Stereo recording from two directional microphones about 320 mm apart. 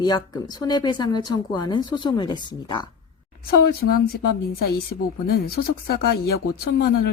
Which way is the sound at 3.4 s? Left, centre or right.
Left.